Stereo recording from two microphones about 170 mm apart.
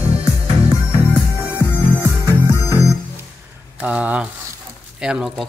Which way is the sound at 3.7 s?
5° right (ahead or behind).